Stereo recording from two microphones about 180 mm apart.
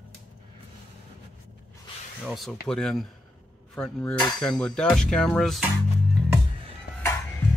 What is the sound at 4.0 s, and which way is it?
Cutlery, 25° left (ahead or behind).